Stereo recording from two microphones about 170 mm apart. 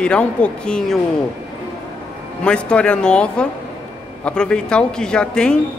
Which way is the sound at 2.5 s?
5° left (ahead or behind).